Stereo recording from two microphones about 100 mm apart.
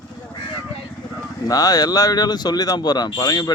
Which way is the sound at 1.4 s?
40° left (ahead or behind).